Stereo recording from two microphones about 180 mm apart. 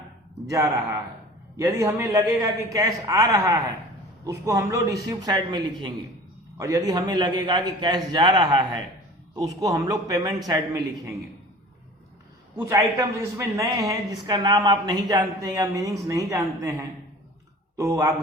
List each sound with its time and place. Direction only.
0.4 s a man's voice: 15° right (ahead or behind)
12.5 s a man's voice: 15° right (ahead or behind)
17.7 s a man's voice: 15° right (ahead or behind)